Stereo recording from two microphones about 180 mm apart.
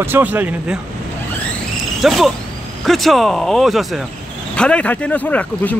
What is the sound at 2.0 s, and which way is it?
Speech, centre (ahead or behind).